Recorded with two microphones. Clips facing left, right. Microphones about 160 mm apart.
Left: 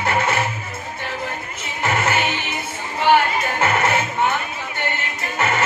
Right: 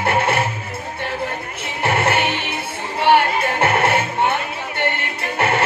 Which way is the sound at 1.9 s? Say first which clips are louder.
Right 3 dB; 60° right (ahead or behind).